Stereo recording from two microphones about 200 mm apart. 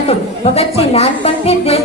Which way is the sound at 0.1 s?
30° left (ahead or behind).